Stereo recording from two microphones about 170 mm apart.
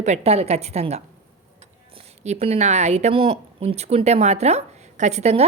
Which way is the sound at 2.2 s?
40° right (ahead or behind).